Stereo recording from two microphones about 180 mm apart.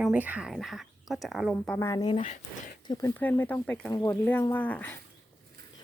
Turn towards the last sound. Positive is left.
turn(degrees=10)  # may be behind; listen again after turning